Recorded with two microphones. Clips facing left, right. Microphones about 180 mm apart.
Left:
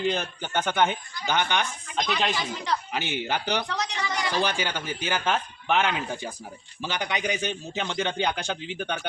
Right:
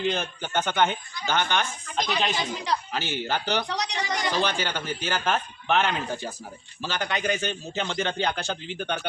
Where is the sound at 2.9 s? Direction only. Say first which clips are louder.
Even; 15° left (ahead or behind).